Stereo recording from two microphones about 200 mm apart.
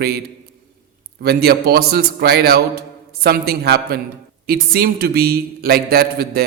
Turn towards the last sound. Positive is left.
turn(degrees=-50)  # may be behind; listen again after turning